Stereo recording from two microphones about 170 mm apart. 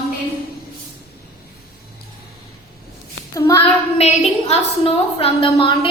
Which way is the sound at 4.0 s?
40° left (ahead or behind).